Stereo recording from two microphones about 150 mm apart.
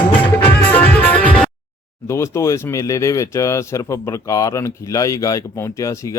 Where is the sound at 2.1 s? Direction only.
20° left (ahead or behind).